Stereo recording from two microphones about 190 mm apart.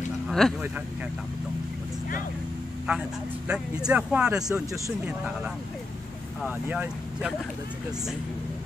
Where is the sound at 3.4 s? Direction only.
5° right (ahead or behind).